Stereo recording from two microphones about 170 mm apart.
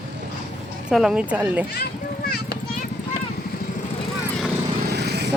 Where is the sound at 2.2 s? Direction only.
65° left (ahead or behind).